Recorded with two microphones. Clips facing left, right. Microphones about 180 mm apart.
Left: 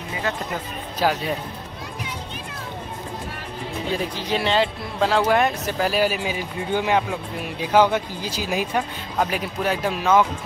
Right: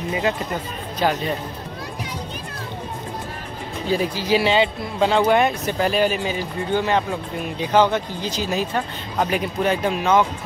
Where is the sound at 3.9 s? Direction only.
5° right (ahead or behind).